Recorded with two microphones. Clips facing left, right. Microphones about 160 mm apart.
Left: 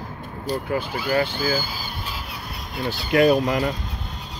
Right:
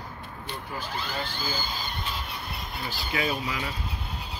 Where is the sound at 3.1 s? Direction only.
60° left (ahead or behind).